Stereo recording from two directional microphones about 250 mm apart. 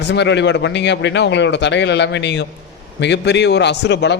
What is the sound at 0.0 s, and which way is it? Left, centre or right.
A man's voice, left.